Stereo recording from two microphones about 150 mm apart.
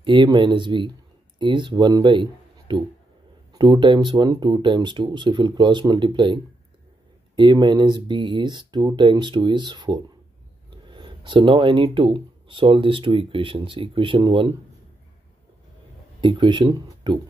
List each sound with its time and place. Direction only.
0.0 s speech: 35° right (ahead or behind)
3.5 s speech: 30° right (ahead or behind)
16.2 s speech: 30° right (ahead or behind)